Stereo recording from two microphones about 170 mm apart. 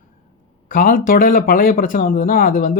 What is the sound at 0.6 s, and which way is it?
Speech, 55° left (ahead or behind).